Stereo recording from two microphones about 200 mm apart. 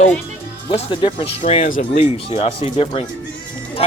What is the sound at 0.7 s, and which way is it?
Speech, 25° left (ahead or behind).